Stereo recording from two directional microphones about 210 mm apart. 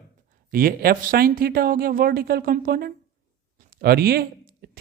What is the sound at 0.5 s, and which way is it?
Speech, 45° right (ahead or behind).